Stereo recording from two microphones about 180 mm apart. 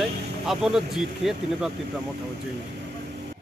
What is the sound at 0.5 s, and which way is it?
Battle cry, centre (ahead or behind).